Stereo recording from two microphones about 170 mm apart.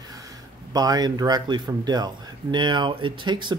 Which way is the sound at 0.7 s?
25° right (ahead or behind).